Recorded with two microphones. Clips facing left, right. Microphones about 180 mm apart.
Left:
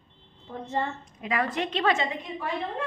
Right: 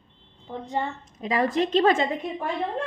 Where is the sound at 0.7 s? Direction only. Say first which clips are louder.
Right 1 dB; 15° right (ahead or behind).